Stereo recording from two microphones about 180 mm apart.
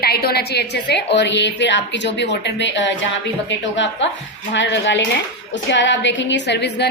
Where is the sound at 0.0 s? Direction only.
60° left (ahead or behind); by 3.1 s 85° left.